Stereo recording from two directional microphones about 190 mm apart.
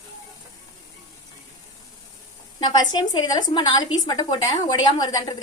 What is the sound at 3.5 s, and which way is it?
A woman's voice, 25° left (ahead or behind).